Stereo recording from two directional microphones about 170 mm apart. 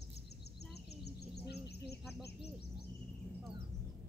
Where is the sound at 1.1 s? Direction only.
75° left (ahead or behind).